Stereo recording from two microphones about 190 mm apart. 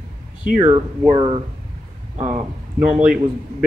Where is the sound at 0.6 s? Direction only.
25° right (ahead or behind).